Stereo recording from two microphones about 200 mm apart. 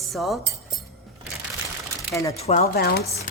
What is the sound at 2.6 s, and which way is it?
Speech, 50° left (ahead or behind).